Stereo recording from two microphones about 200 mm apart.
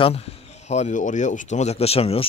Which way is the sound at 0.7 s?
35° left (ahead or behind).